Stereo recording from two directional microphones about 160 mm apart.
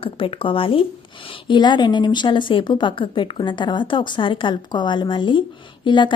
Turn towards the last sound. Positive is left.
turn(degrees=30)  # may be behind; listen again after turning